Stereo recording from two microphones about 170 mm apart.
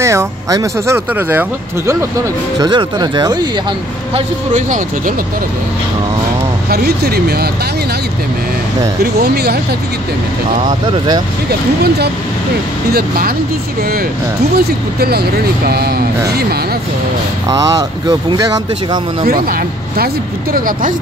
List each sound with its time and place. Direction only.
0.0 s speech: 15° right (ahead or behind)
2.6 s speech: 25° right (ahead or behind)
4.1 s speech: 50° right (ahead or behind)
6.7 s speech: 65° right (ahead or behind)
9.0 s speech: 70° right (ahead or behind)
10.7 s speech: 25° right (ahead or behind)
14.5 s speech: 65° right (ahead or behind)
17.5 s speech: 20° right (ahead or behind)
19.2 s speech: 60° right (ahead or behind)